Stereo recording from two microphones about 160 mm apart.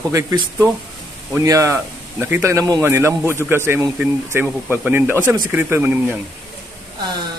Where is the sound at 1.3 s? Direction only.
20° right (ahead or behind).